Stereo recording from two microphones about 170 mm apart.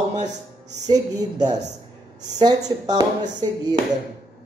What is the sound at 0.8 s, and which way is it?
Speech, 25° right (ahead or behind).